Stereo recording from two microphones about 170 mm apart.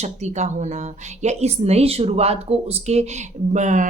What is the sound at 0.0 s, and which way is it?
Speech, 40° right (ahead or behind).